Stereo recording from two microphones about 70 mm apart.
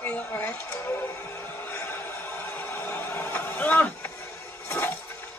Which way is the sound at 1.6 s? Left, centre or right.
Left.